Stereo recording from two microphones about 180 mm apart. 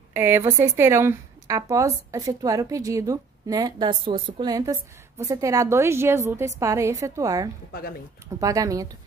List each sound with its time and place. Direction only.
0.1 s a woman's voice: 15° right (ahead or behind)